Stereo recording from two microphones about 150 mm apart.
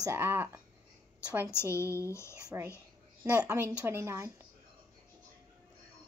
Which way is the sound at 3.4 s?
15° right (ahead or behind).